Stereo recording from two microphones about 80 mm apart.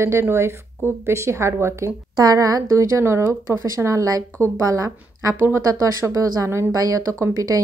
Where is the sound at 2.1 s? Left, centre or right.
Right.